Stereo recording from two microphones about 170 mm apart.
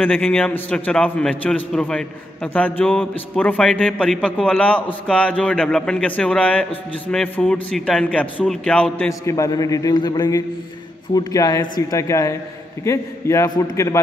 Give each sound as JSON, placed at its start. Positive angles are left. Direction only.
{"t": 0.0, "sound": "a man's voice", "side_deg": 5}
{"t": 9.2, "sound": "a man's voice", "side_deg": 20}